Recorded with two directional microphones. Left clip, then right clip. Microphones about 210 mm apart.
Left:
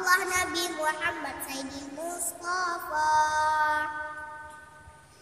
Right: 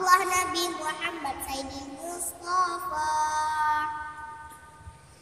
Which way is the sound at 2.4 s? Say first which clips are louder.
Right 4 dB; 15° left (ahead or behind).